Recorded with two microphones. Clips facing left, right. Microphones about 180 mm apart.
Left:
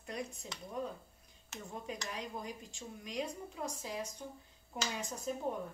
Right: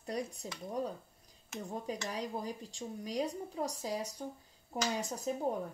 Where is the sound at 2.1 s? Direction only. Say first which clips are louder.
Right 4 dB; 35° right (ahead or behind).